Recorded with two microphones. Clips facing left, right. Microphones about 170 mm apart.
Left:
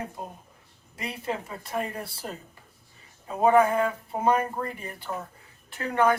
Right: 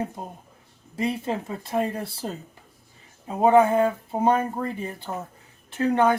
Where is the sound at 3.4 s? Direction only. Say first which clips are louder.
Right 3 dB; 25° right (ahead or behind).